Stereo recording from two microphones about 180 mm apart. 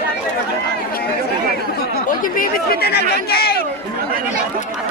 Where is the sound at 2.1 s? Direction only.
50° left (ahead or behind).